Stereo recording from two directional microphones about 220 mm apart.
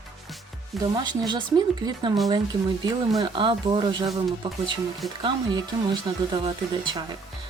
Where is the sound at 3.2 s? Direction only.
25° right (ahead or behind).